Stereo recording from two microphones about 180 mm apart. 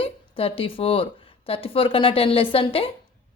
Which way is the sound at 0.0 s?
30° left (ahead or behind).